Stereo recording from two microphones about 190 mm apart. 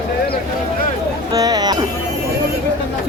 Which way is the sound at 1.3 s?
20° right (ahead or behind).